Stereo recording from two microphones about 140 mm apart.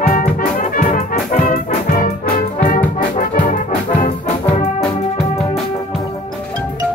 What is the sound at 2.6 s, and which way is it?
Brass instrument, 70° left (ahead or behind).